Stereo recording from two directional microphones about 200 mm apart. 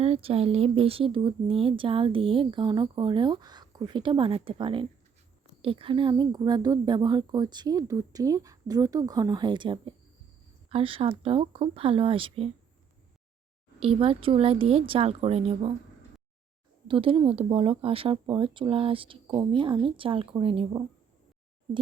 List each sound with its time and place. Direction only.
0.0 s speech: 30° right (ahead or behind)
13.8 s speech: 25° right (ahead or behind)
16.9 s speech: 25° right (ahead or behind)